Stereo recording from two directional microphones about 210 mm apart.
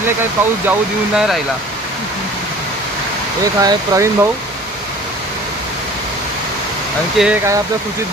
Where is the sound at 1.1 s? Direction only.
Centre (ahead or behind).